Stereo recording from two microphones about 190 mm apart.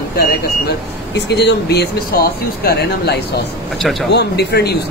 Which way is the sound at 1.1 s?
65° left (ahead or behind).